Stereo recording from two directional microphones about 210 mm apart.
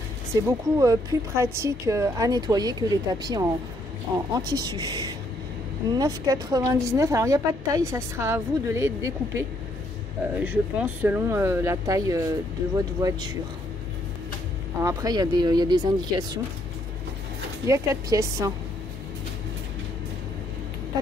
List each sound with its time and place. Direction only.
0.3 s a woman's voice: 15° right (ahead or behind)
4.5 s a woman's voice: 20° right (ahead or behind)
14.8 s speech: 15° right (ahead or behind)
17.6 s a woman's voice: 15° right (ahead or behind)